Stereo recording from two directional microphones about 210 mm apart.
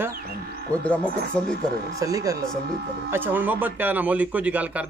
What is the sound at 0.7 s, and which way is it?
Speech, 5° left (ahead or behind).